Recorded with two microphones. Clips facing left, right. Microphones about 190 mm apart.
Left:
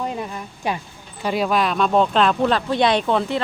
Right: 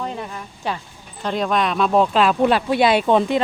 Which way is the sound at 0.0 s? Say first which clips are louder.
Left 2 dB; 15° left (ahead or behind).